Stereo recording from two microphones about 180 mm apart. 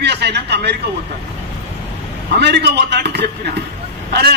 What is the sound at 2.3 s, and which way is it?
A man's voice, 65° right (ahead or behind).